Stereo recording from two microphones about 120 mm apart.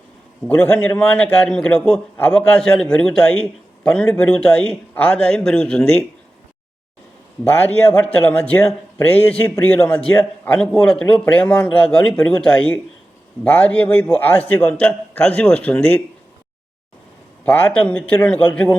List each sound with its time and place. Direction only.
0.4 s a man's voice: 15° left (ahead or behind)
7.4 s a man's voice: 15° left (ahead or behind)
17.4 s a man's voice: 15° left (ahead or behind)